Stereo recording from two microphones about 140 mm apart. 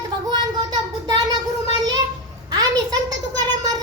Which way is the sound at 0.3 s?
30° right (ahead or behind).